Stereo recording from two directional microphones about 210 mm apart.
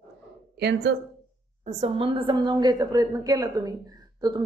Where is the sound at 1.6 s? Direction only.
35° right (ahead or behind).